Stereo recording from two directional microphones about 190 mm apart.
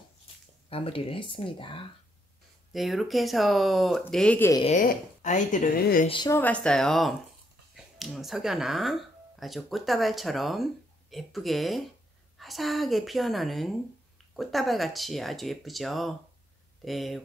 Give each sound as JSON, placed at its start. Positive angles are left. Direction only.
{"t": 0.7, "sound": "speech", "side_deg": 30}
{"t": 2.7, "sound": "speech", "side_deg": 0}
{"t": 4.6, "sound": "speech", "side_deg": 40}
{"t": 6.0, "sound": "speech", "side_deg": 25}
{"t": 6.3, "sound": "speech", "side_deg": 10}